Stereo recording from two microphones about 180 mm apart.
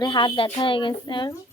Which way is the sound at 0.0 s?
25° left (ahead or behind).